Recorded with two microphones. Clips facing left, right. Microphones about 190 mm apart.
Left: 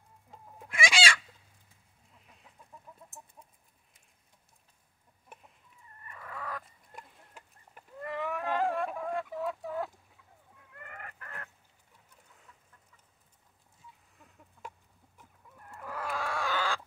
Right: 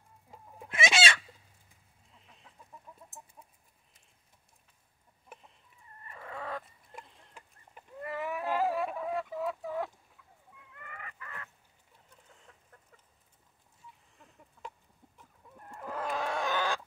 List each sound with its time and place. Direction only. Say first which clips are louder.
0.7 s chicken: right 1 dB; 25° right (ahead or behind)
2.2 s chicken: right 1 dB; 5° left (ahead or behind)
6.0 s fowl: right 2 dB; 25° right (ahead or behind)
8.0 s chicken: left 1 dB; 5° right (ahead or behind)
10.8 s chicken: left 1 dB; 50° left (ahead or behind)
15.5 s chicken: right 2 dB; 25° right (ahead or behind)